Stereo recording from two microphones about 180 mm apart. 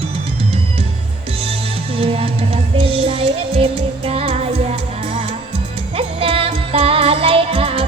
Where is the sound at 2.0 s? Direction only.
30° right (ahead or behind).